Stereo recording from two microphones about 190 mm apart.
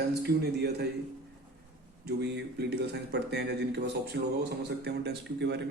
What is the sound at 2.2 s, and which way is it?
Speech, 65° right (ahead or behind).